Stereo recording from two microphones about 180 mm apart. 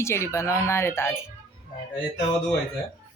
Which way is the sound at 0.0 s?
15° left (ahead or behind).